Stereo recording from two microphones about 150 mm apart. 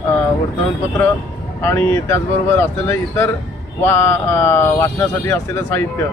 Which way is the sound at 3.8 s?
15° left (ahead or behind).